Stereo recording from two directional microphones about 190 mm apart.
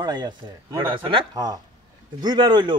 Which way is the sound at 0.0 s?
20° right (ahead or behind).